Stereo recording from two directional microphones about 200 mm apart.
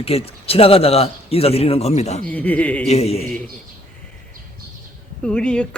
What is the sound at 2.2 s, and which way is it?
Speech, 5° left (ahead or behind).